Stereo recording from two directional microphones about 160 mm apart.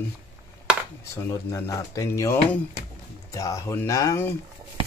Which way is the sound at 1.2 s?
20° left (ahead or behind).